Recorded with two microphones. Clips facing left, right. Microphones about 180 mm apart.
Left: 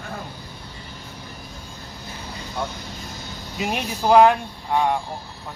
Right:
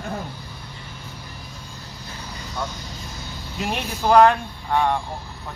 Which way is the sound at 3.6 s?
Centre (ahead or behind).